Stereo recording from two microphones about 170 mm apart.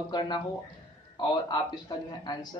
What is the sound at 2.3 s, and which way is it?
Speech, 25° left (ahead or behind).